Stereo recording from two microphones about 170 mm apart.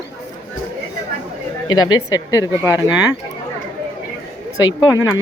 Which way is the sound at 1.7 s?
20° left (ahead or behind).